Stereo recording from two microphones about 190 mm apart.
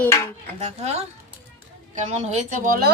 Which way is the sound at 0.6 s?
35° right (ahead or behind).